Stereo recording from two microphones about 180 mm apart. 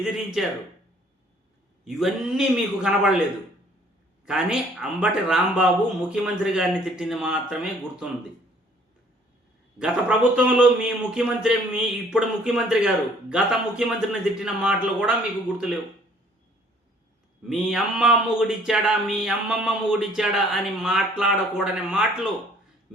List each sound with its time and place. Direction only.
0.0 s speech: centre (ahead or behind)
1.8 s speech: 5° right (ahead or behind)
4.3 s speech: 5° right (ahead or behind)
9.7 s speech: 5° right (ahead or behind)
17.5 s speech: centre (ahead or behind)